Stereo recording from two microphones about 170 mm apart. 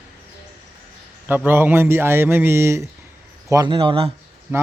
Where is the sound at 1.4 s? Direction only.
10° right (ahead or behind); by 4.1 s 30° right (ahead or behind).